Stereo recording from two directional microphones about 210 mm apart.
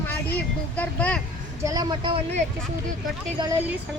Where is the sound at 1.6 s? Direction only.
20° right (ahead or behind).